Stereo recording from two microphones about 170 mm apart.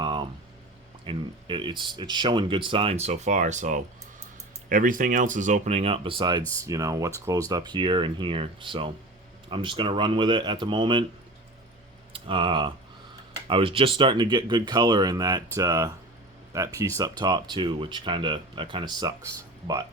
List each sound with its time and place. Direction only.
0.0 s boiling: 30° right (ahead or behind)
1.0 s speech: 30° right (ahead or behind)
12.1 s speech: 30° right (ahead or behind)